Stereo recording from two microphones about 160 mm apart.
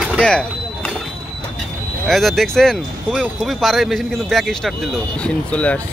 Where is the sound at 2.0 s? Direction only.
Centre (ahead or behind).